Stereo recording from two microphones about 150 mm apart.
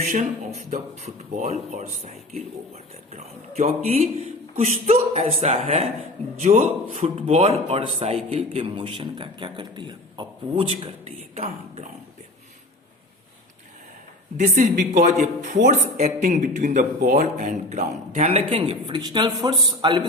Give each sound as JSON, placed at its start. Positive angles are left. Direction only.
{"t": 0.0, "sound": "a man's voice", "side_deg": -50}
{"t": 14.3, "sound": "a man's voice", "side_deg": -55}